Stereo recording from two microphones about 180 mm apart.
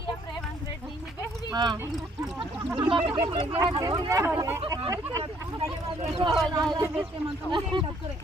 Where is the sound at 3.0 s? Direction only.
30° right (ahead or behind).